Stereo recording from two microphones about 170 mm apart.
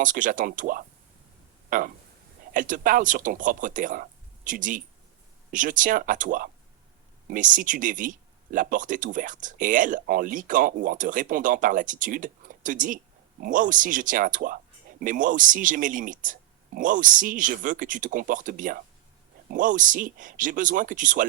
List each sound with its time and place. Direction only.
0.0 s speech: 50° right (ahead or behind)